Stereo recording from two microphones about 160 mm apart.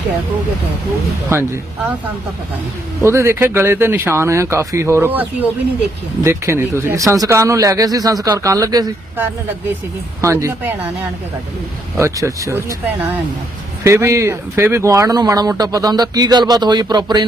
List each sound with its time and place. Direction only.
1.3 s speech: 15° right (ahead or behind)
3.0 s speech: 15° right (ahead or behind)
10.2 s speech: 20° right (ahead or behind)
11.9 s speech: 20° right (ahead or behind)